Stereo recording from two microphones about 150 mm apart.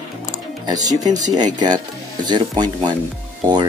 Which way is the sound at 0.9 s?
25° right (ahead or behind).